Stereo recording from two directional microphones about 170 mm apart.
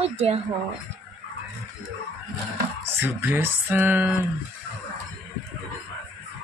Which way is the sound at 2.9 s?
10° right (ahead or behind).